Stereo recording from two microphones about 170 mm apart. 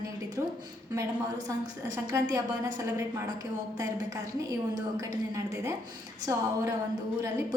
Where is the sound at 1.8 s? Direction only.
20° right (ahead or behind).